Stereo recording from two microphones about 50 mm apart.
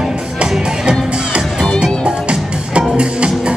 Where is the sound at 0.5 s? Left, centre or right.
Centre.